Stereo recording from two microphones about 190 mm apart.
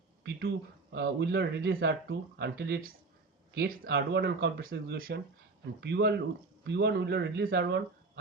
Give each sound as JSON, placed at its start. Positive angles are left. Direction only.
{"t": 0.9, "sound": "speech", "side_deg": -60}